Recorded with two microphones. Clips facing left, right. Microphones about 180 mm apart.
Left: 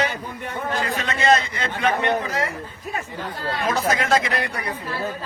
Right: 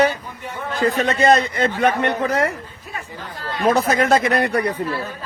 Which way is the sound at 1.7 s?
60° right (ahead or behind).